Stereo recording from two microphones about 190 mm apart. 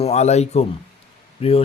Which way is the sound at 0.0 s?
35° left (ahead or behind).